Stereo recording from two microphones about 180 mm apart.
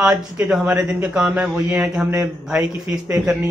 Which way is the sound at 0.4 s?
5° right (ahead or behind).